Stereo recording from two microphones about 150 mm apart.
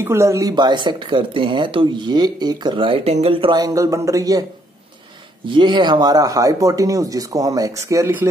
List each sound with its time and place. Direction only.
0.0 s speech: 20° right (ahead or behind)
5.5 s speech: 30° right (ahead or behind)